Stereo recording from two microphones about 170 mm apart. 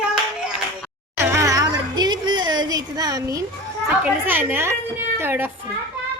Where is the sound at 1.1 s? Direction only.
15° right (ahead or behind).